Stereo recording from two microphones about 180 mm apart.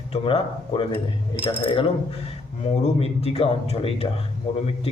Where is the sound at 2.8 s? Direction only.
35° left (ahead or behind).